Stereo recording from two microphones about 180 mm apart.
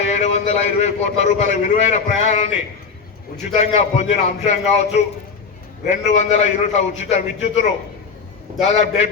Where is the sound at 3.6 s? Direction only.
35° left (ahead or behind).